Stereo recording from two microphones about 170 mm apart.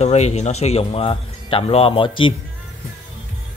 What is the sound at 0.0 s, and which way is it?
Speech, 40° left (ahead or behind).